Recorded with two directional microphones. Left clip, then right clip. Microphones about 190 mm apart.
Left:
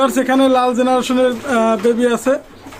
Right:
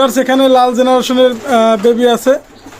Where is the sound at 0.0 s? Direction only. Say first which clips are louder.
Right 4 dB; 25° right (ahead or behind).